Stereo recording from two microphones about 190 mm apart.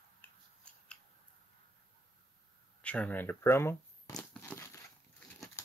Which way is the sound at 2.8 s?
5° left (ahead or behind).